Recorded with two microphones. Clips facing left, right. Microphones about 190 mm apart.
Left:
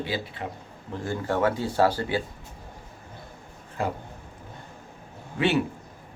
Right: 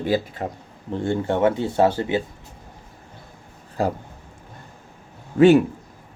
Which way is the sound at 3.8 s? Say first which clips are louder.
Right 6 dB; 35° right (ahead or behind).